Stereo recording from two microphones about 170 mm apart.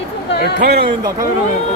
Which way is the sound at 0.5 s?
70° right (ahead or behind).